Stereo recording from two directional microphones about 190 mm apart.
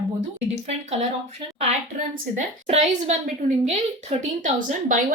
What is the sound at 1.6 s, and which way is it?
A woman's voice, 40° right (ahead or behind).